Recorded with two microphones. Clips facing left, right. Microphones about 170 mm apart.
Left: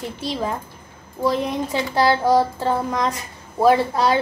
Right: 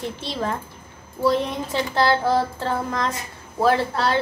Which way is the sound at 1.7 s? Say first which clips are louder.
Left 1 dB; 10° left (ahead or behind).